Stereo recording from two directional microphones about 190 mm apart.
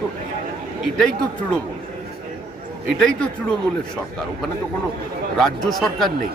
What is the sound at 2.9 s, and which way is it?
Speech, 5° left (ahead or behind).